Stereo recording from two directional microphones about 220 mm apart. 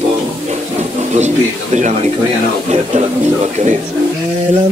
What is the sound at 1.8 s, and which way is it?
Speech, 35° right (ahead or behind).